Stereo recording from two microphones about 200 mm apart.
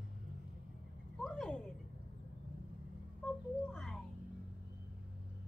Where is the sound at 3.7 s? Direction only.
Centre (ahead or behind).